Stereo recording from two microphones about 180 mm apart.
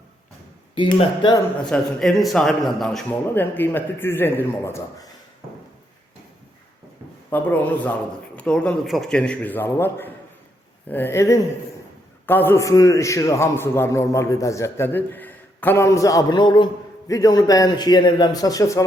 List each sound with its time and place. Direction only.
1.6 s a man's voice: 5° left (ahead or behind)
7.3 s a man's voice: 10° left (ahead or behind)